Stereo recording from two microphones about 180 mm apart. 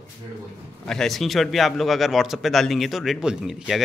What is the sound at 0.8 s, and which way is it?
A man's voice, centre (ahead or behind).